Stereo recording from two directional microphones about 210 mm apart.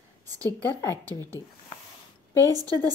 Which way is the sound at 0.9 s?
15° right (ahead or behind).